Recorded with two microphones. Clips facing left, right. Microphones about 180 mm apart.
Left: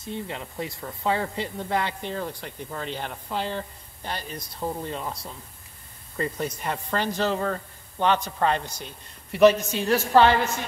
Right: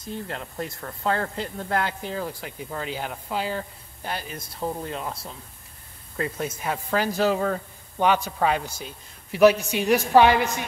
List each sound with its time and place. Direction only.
0.0 s speech: centre (ahead or behind)